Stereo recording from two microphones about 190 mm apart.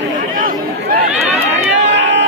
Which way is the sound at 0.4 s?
45° right (ahead or behind).